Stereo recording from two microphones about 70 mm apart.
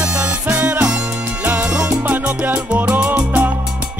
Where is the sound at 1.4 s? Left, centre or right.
Centre.